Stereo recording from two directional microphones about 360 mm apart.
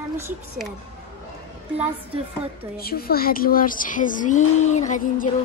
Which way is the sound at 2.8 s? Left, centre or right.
Left.